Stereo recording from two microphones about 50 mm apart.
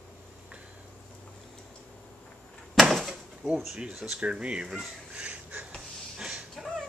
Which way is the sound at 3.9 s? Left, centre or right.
Centre.